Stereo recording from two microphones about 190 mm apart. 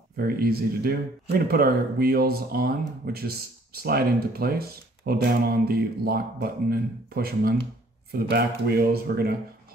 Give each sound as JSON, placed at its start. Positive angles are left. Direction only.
{"t": 0.2, "sound": "speech", "side_deg": -55}